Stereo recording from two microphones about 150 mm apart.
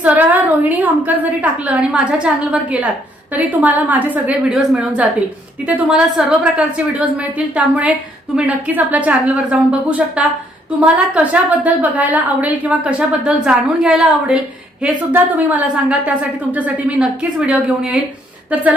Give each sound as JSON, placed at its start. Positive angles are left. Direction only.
{"t": 0.0, "sound": "a woman's voice", "side_deg": -10}